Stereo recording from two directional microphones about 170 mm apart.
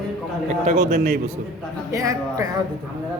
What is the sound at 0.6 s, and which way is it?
Speech, 45° right (ahead or behind).